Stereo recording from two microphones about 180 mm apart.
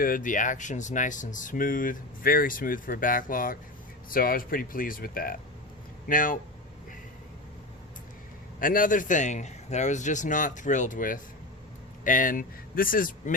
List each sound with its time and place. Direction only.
0.0 s speech: 50° left (ahead or behind)
8.5 s speech: 50° left (ahead or behind)